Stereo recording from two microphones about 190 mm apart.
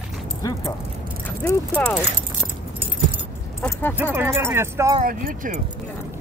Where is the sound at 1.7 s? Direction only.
5° left (ahead or behind).